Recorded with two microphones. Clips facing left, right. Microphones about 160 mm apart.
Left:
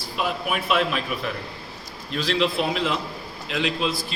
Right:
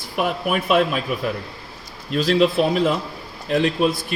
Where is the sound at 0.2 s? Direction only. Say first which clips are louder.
Right 5 dB; 55° right (ahead or behind).